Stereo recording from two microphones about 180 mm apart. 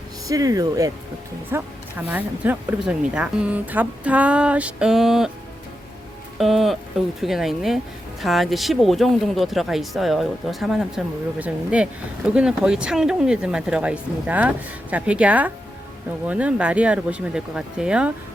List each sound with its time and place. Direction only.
0.3 s speech: 20° right (ahead or behind); by 5.3 s centre (ahead or behind)
6.4 s speech: centre (ahead or behind)